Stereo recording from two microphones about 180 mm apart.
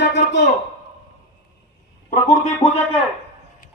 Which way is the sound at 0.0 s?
80° left.